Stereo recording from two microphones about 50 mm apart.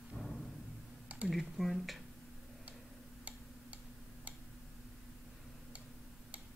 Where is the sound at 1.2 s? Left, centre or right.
Centre.